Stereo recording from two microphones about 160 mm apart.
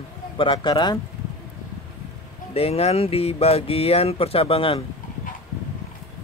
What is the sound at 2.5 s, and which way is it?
Speech, 40° left (ahead or behind).